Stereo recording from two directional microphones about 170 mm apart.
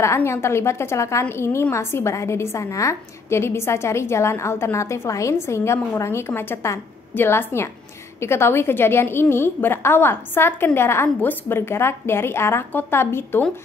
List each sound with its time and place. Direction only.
0.0 s a woman's voice: 15° left (ahead or behind)